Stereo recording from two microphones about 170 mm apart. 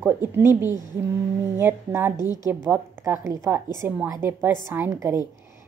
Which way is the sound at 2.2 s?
20° left (ahead or behind).